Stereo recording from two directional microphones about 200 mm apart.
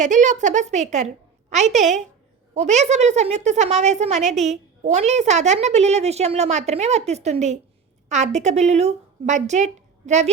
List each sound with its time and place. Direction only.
0.0 s a woman's voice: 35° right (ahead or behind)